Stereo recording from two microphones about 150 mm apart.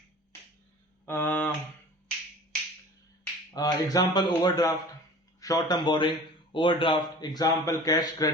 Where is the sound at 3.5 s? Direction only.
25° left (ahead or behind).